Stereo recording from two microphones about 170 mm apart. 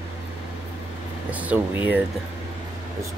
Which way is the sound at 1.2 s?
10° right (ahead or behind).